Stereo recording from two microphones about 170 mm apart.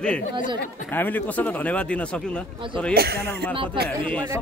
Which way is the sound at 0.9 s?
10° left (ahead or behind).